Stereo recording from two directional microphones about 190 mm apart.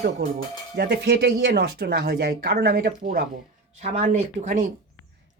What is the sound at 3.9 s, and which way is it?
Speech, 40° right (ahead or behind).